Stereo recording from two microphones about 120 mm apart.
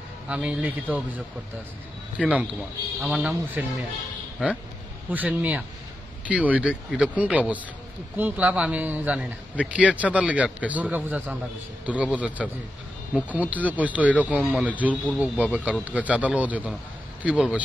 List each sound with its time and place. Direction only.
0.3 s a man's voice: 10° right (ahead or behind)